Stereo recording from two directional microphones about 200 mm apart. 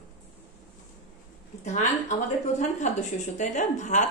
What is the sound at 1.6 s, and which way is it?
A woman's voice, 35° left (ahead or behind).